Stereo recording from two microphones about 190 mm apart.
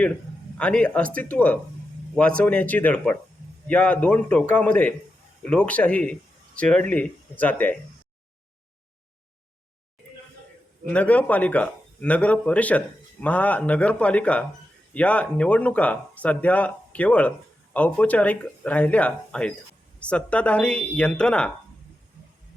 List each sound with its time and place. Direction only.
0.5 s speech: 5° left (ahead or behind)
10.9 s speech: 10° left (ahead or behind)